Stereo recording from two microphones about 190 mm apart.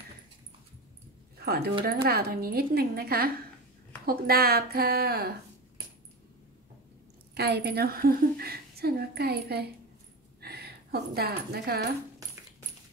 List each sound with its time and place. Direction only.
1.4 s a woman's voice: 55° right (ahead or behind)
7.3 s a woman's voice: 60° right (ahead or behind)